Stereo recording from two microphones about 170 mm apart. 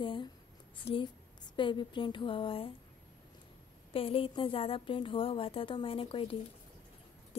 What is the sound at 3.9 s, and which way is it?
A woman's voice, 35° left (ahead or behind).